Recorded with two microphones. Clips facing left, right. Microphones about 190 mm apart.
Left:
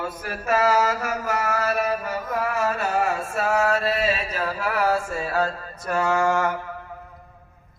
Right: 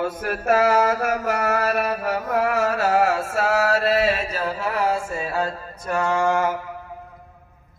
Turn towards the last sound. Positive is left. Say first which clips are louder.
# right 1 dB
turn(degrees=-15)  # may be behind; listen again after turning